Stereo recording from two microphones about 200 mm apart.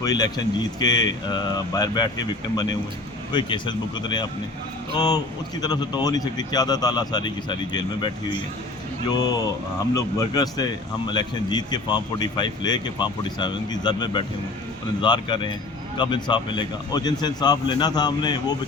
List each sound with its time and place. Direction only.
0.0 s speech: 20° left (ahead or behind)
3.3 s speech: 25° left (ahead or behind)